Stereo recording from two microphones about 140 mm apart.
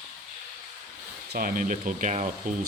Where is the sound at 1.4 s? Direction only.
85° right; by 2.3 s 60° right (ahead or behind).